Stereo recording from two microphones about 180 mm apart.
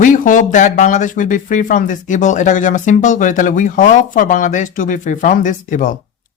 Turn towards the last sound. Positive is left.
turn(degrees=45)  # may be behind; listen again after turning